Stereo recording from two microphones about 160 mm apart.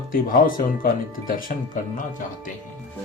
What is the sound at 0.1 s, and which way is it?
Speech, 60° left (ahead or behind).